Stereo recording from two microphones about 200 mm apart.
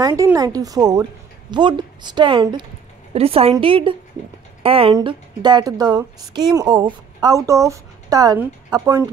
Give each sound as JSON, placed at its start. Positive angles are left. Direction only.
{"t": 0.0, "sound": "a woman's voice", "side_deg": -15}